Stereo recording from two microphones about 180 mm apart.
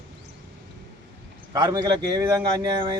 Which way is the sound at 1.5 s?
20° right (ahead or behind).